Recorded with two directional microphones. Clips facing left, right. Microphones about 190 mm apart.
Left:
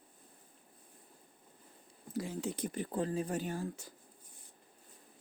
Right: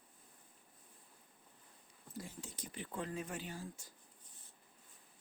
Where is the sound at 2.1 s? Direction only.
85° left; by 3.9 s 60° left (ahead or behind).